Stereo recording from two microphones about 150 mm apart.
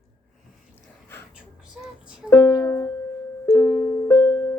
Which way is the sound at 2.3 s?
20° left (ahead or behind).